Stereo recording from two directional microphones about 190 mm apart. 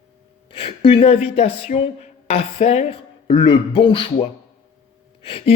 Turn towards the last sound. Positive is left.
turn(degrees=30)  # may be behind; listen again after turning